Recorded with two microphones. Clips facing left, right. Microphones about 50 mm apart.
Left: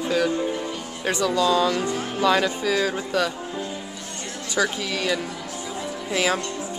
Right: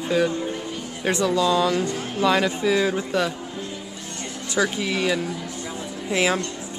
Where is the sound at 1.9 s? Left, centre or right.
Centre.